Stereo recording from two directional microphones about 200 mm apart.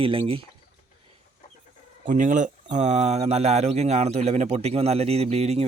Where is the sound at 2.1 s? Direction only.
40° right (ahead or behind).